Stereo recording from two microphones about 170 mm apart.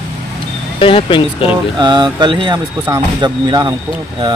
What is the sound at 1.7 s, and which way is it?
Speech, 25° right (ahead or behind).